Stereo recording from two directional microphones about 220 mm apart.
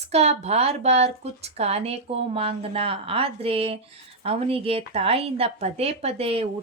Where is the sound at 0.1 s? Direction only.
30° right (ahead or behind).